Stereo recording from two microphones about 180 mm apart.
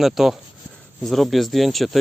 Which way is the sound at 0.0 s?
Centre (ahead or behind).